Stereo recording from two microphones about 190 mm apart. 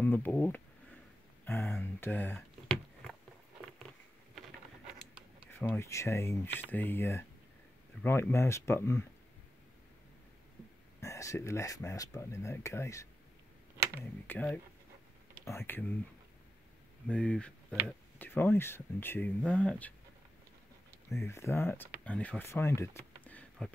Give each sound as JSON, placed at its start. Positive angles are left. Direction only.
{"t": 0.0, "sound": "speech", "side_deg": 10}
{"t": 1.4, "sound": "a sound", "side_deg": 10}
{"t": 4.4, "sound": "a sound", "side_deg": -5}
{"t": 5.5, "sound": "speech", "side_deg": 10}
{"t": 11.0, "sound": "speech", "side_deg": 15}
{"t": 14.2, "sound": "speech", "side_deg": 10}
{"t": 17.1, "sound": "speech", "side_deg": 5}
{"t": 21.2, "sound": "speech", "side_deg": 15}